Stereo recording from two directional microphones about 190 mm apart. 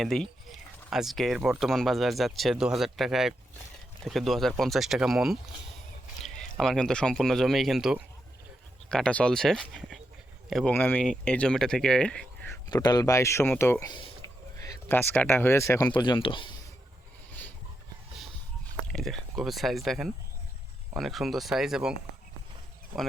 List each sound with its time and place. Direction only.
0.0 s speech: 5° left (ahead or behind)
12.6 s speech: 20° left (ahead or behind)
18.9 s speech: centre (ahead or behind)